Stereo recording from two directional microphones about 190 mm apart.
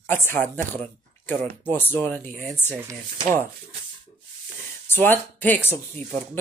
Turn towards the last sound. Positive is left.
turn(degrees=10)  # may be behind; listen again after turning